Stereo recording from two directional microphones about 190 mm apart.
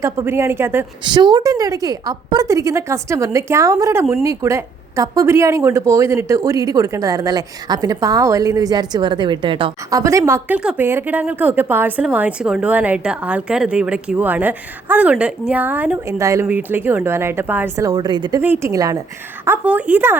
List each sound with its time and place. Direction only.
0.0 s speech: 15° right (ahead or behind)
1.0 s speech: 25° right (ahead or behind)
19.5 s speech: 5° right (ahead or behind)